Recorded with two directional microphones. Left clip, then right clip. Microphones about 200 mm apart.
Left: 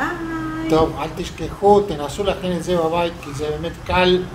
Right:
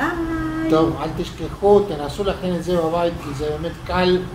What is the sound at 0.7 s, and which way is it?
Speech, 50° left (ahead or behind).